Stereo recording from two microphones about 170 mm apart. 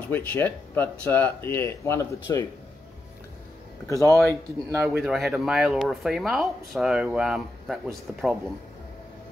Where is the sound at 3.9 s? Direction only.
20° left (ahead or behind).